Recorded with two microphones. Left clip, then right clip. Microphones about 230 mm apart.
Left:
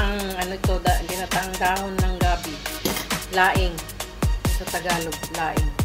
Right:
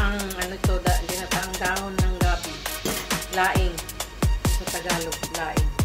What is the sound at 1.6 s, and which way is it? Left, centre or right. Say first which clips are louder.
Music: left 5 dB; left.